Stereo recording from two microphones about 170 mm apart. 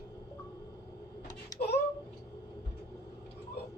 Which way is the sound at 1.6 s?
75° left (ahead or behind).